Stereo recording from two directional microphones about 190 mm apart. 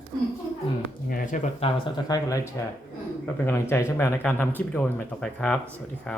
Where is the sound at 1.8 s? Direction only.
20° left (ahead or behind).